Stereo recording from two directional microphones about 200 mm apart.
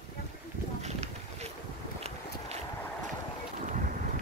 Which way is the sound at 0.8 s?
35° right (ahead or behind).